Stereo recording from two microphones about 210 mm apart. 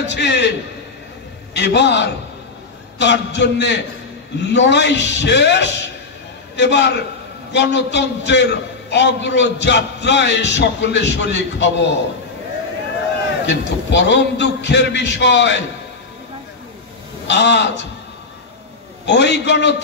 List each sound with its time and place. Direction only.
0.0 s a man's voice: 55° left (ahead or behind)
1.5 s a man's voice: 55° left (ahead or behind)
13.5 s a man's voice: 60° left (ahead or behind)
17.3 s a man's voice: 55° left (ahead or behind)
19.0 s a man's voice: 55° left (ahead or behind)